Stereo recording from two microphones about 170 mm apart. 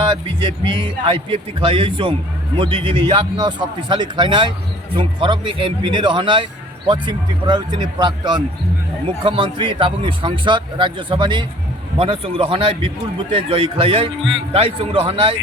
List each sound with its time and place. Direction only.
0.0 s a man's voice: 30° right (ahead or behind)